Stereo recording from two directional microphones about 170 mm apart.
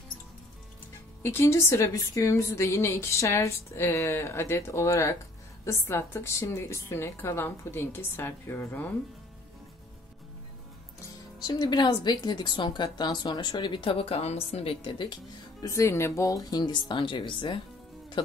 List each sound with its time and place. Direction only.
1.2 s a woman's voice: 15° left (ahead or behind)
11.3 s speech: 25° left (ahead or behind)
15.6 s speech: 15° left (ahead or behind)